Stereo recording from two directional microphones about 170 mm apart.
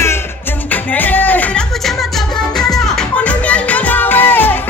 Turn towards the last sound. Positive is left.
turn(degrees=10)  # may be behind; listen again after turning